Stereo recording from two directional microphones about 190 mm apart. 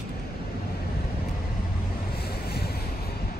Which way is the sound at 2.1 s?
55° left (ahead or behind).